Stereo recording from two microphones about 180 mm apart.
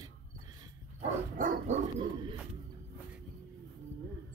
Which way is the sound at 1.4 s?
50° right (ahead or behind).